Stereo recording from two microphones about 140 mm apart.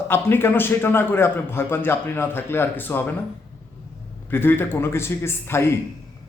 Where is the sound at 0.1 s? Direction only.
15° left (ahead or behind).